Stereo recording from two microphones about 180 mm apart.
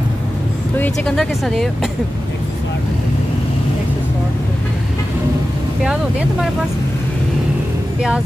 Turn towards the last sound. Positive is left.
turn(degrees=-5)  # may be behind; listen again after turning